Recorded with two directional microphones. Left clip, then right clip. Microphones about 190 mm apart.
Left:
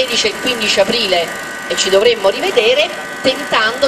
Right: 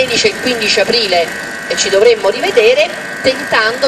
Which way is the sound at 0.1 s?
45° left (ahead or behind).